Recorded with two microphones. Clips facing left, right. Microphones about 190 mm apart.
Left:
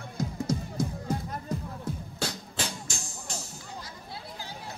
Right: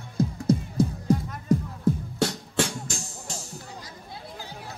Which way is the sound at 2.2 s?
70° right (ahead or behind).